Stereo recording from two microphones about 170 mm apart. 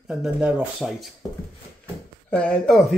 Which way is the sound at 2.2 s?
5° left (ahead or behind).